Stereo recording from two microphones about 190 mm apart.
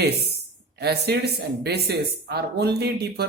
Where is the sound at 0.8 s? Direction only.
60° right (ahead or behind).